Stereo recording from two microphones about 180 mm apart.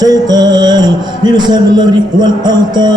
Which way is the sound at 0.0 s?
20° right (ahead or behind).